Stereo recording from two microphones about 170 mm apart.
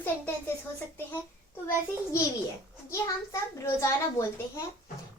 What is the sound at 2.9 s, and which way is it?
A child's voice, 15° left (ahead or behind).